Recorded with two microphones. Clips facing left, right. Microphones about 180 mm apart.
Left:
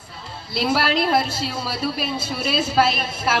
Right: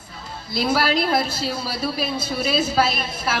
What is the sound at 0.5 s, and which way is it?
A woman's voice, 40° right (ahead or behind).